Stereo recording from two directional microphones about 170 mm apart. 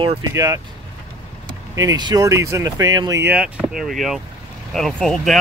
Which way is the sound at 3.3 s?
5° right (ahead or behind).